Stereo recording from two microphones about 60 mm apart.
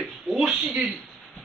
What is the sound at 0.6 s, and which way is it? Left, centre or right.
Speech, centre.